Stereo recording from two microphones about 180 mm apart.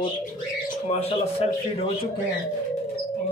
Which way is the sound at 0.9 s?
35° left (ahead or behind).